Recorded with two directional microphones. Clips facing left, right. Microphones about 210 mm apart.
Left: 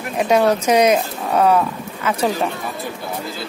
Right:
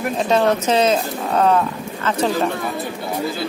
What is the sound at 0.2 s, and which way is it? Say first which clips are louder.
Speech: left 2 dB; 10° left (ahead or behind).